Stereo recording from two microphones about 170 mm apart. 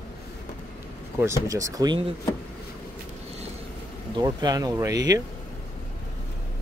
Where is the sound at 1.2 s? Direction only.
20° right (ahead or behind).